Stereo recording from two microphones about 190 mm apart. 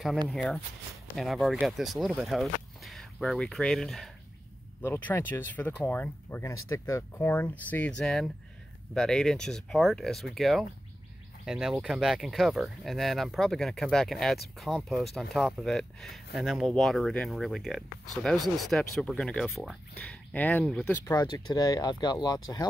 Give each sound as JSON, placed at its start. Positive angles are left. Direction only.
{"t": 0.3, "sound": "speech", "side_deg": 5}
{"t": 4.8, "sound": "speech", "side_deg": 15}
{"t": 21.2, "sound": "speech", "side_deg": 20}